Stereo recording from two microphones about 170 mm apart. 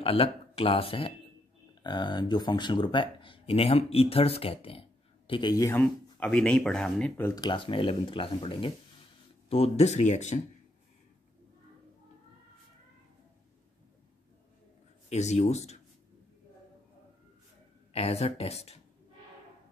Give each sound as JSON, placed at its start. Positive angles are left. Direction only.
{"t": 0.0, "sound": "speech", "side_deg": 35}
{"t": 7.3, "sound": "speech", "side_deg": 25}
{"t": 15.0, "sound": "speech", "side_deg": 40}
{"t": 17.9, "sound": "speech", "side_deg": 35}